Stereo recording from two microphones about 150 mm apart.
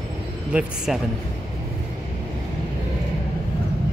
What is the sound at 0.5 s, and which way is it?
Speech, 5° right (ahead or behind).